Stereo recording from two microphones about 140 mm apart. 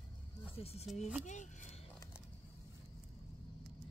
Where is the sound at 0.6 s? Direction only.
45° left (ahead or behind).